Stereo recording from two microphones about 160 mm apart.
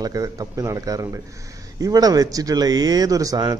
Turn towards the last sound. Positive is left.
turn(degrees=-20)  # may be behind; listen again after turning